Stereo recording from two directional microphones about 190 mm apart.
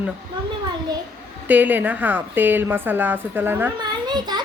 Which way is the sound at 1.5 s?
10° right (ahead or behind).